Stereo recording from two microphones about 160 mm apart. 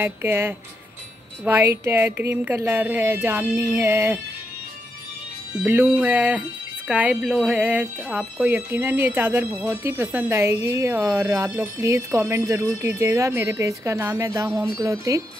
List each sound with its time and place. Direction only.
0.0 s speech: 15° right (ahead or behind)
5.6 s speech: 10° right (ahead or behind)